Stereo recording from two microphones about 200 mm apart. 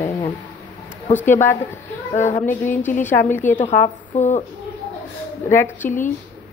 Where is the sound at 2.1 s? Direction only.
35° left (ahead or behind).